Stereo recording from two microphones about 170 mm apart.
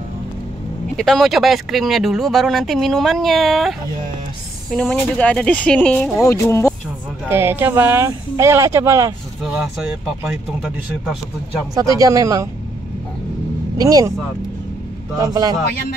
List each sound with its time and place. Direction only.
0.9 s speech: centre (ahead or behind)
6.2 s speech: 15° left (ahead or behind)
7.2 s speech: 10° right (ahead or behind)
9.5 s speech: 5° right (ahead or behind)
11.7 s speech: 20° right (ahead or behind)
13.7 s speech: 20° right (ahead or behind)
15.1 s speech: 20° right (ahead or behind)